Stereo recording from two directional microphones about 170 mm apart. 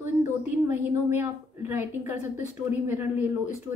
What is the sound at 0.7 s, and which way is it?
A woman's voice, 10° right (ahead or behind).